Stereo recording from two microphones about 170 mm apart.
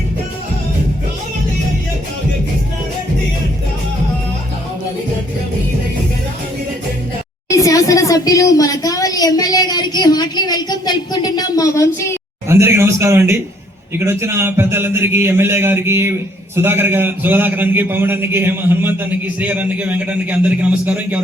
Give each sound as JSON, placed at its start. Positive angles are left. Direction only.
{"t": 7.5, "sound": "a woman's voice", "side_deg": 20}
{"t": 12.5, "sound": "a man's voice", "side_deg": -15}